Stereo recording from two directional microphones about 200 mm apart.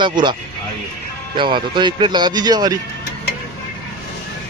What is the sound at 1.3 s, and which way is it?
Speech, 25° right (ahead or behind).